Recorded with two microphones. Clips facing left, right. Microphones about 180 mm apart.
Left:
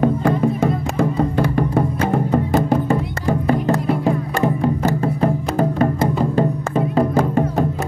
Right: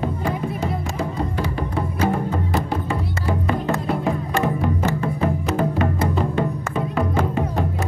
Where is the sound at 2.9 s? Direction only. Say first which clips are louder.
Left 5 dB; 40° left (ahead or behind).